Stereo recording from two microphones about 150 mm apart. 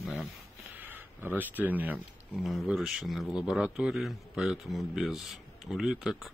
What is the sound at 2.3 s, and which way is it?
A man's voice, centre (ahead or behind).